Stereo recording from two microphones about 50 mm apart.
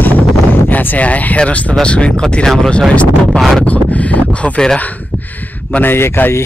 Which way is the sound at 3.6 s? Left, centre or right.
Left.